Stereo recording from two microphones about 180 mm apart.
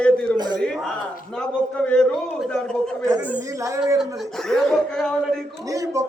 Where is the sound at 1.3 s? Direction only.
5° left (ahead or behind).